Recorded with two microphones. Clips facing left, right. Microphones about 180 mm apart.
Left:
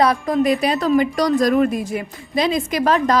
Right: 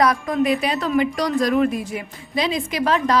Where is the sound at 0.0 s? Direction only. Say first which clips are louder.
Left 2 dB; 30° left (ahead or behind).